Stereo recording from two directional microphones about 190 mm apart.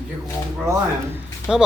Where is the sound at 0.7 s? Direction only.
10° right (ahead or behind).